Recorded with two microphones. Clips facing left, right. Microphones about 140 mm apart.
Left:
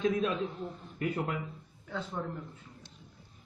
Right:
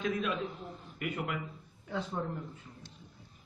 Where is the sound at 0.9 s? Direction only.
35° left (ahead or behind).